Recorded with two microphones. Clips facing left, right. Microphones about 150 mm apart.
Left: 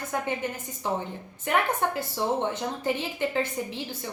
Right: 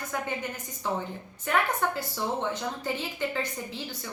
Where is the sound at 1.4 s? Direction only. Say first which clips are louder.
Left 1 dB; 20° left (ahead or behind).